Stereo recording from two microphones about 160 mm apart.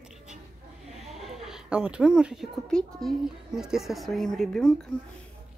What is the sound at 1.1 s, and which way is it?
Speech, centre (ahead or behind).